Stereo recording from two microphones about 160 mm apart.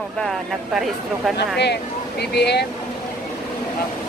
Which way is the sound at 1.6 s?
90° left.